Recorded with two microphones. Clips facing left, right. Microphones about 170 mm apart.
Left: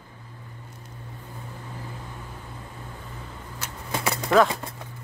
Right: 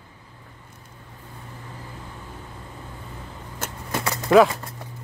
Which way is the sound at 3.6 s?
50° right (ahead or behind).